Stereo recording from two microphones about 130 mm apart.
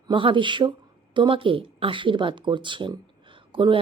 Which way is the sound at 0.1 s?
40° right (ahead or behind).